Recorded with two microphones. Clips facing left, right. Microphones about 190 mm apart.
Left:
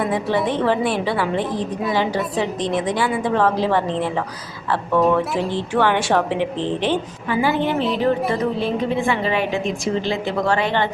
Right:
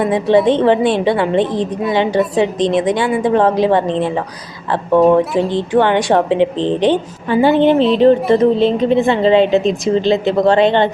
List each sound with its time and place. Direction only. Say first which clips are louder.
0.1 s a woman's voice: right 8 dB; 20° right (ahead or behind)
6.2 s speech: right 8 dB; 65° right (ahead or behind)
6.6 s a woman's voice: right 7 dB; 20° right (ahead or behind)